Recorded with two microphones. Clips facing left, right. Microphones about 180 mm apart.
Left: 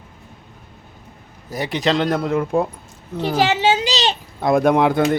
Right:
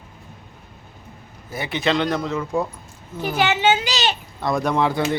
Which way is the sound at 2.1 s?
55° left (ahead or behind).